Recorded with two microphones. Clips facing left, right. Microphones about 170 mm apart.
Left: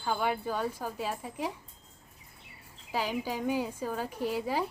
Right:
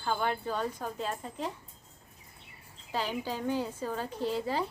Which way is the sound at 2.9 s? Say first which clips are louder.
Left 1 dB; 10° left (ahead or behind).